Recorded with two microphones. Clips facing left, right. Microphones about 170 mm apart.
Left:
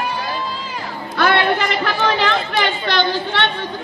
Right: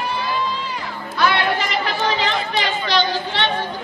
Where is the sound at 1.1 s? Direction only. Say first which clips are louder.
Left 3 dB; 55° left (ahead or behind).